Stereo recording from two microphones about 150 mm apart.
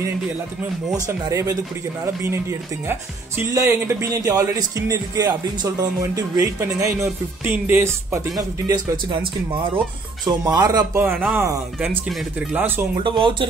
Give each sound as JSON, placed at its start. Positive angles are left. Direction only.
{"t": 1.0, "sound": "speech", "side_deg": -20}
{"t": 2.9, "sound": "speech", "side_deg": -15}
{"t": 8.6, "sound": "speech", "side_deg": -30}
{"t": 12.1, "sound": "speech", "side_deg": 0}
{"t": 12.5, "sound": "speech", "side_deg": -15}
{"t": 12.9, "sound": "speech", "side_deg": -35}